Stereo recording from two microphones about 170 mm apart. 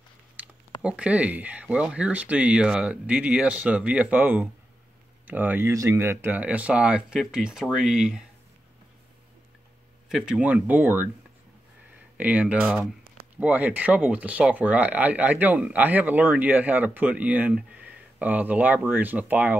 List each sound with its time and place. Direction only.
0.4 s a sound: 10° right (ahead or behind)
0.8 s speech: 5° right (ahead or behind)
10.0 s speech: 5° right (ahead or behind)
12.2 s speech: 10° right (ahead or behind)